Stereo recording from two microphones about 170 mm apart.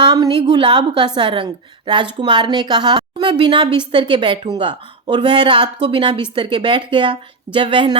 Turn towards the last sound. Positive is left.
turn(degrees=-30)  # may be behind; listen again after turning